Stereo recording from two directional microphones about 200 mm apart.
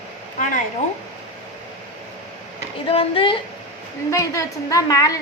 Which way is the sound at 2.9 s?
25° left (ahead or behind).